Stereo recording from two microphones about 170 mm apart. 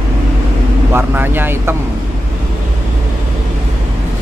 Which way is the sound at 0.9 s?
10° right (ahead or behind).